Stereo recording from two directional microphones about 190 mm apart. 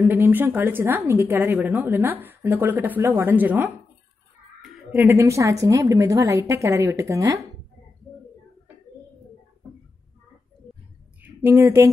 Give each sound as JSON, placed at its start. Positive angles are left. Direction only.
{"t": 0.0, "sound": "a woman's voice", "side_deg": -10}
{"t": 4.6, "sound": "a sound", "side_deg": 0}
{"t": 5.0, "sound": "a woman's voice", "side_deg": -15}
{"t": 11.2, "sound": "speech", "side_deg": -10}